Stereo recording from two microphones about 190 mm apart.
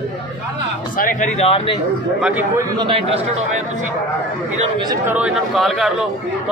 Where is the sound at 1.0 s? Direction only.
40° left (ahead or behind).